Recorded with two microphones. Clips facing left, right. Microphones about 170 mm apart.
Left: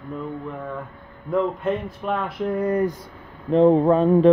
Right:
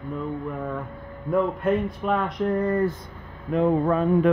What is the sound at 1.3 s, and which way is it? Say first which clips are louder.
Speech: even; centre (ahead or behind).